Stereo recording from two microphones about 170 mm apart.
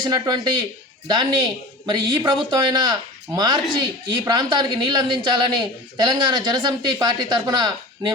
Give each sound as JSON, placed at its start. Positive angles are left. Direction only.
{"t": 0.0, "sound": "speech", "side_deg": -25}